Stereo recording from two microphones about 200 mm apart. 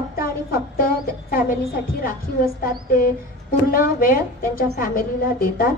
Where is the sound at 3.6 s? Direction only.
45° left (ahead or behind).